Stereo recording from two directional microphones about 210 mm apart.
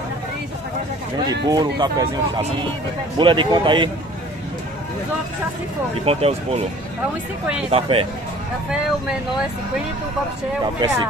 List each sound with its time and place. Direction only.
1.5 s speech: 20° right (ahead or behind)
6.0 s speech: 30° right (ahead or behind)
7.7 s speech: 25° right (ahead or behind)
10.6 s speech: 20° right (ahead or behind)